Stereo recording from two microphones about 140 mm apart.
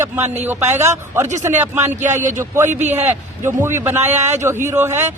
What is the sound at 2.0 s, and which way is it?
Speech, 60° right (ahead or behind).